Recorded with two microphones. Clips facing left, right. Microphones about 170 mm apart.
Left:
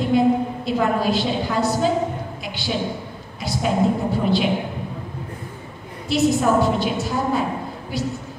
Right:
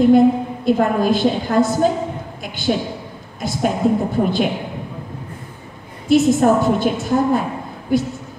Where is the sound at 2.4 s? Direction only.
50° right (ahead or behind).